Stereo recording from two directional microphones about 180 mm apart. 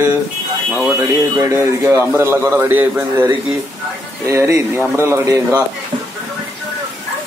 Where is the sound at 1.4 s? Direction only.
15° right (ahead or behind).